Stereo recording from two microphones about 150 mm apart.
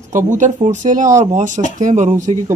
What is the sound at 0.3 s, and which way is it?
Speech, 55° right (ahead or behind).